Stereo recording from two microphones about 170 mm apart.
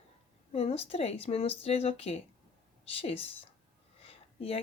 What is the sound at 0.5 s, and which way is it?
A woman's voice, 35° left (ahead or behind).